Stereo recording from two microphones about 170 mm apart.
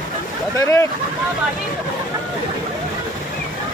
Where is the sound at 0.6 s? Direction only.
20° left (ahead or behind).